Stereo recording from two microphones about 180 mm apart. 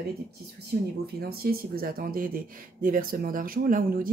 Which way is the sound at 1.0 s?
60° right (ahead or behind).